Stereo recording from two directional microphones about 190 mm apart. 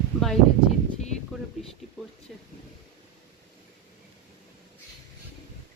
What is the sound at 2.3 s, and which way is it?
Speech, centre (ahead or behind).